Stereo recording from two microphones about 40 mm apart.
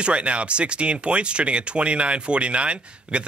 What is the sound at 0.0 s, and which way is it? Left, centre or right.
Speech, right.